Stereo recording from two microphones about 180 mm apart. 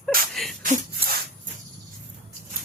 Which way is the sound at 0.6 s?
55° right (ahead or behind).